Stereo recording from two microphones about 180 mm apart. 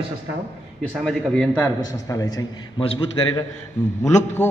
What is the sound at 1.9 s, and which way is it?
A man's voice, 20° left (ahead or behind).